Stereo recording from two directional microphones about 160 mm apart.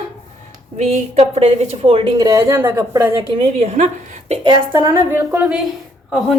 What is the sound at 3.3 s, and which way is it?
A woman's voice, 35° right (ahead or behind).